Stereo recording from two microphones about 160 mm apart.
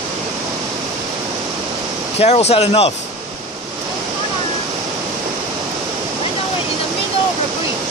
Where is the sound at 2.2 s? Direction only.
40° left (ahead or behind).